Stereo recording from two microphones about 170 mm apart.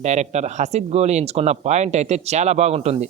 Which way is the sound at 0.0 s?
40° right (ahead or behind).